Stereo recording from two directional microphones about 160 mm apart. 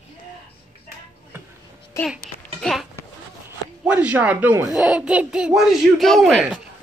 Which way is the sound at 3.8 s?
10° right (ahead or behind).